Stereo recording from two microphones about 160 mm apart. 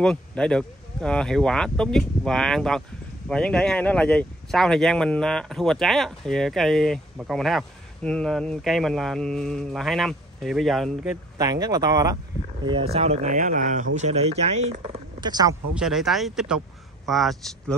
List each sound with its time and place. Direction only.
0.0 s speech: 5° left (ahead or behind)
11.3 s speech: 25° right (ahead or behind)
12.6 s speech: 35° right (ahead or behind)
15.1 s speech: 25° right (ahead or behind)
15.7 s speech: 5° right (ahead or behind)